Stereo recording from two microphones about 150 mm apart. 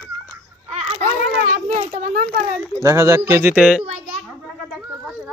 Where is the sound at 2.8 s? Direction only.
20° right (ahead or behind).